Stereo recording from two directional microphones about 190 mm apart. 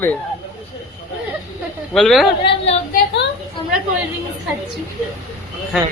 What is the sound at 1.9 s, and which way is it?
Speech, centre (ahead or behind).